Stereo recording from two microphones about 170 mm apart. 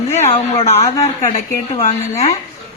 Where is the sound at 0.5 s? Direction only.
40° left (ahead or behind).